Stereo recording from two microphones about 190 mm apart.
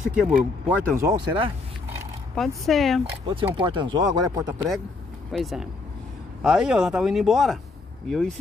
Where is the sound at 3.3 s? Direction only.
25° right (ahead or behind).